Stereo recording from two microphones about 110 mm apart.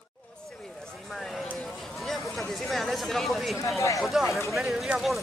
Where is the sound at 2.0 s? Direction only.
Centre (ahead or behind).